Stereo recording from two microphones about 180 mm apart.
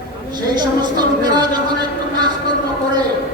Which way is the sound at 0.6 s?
25° right (ahead or behind).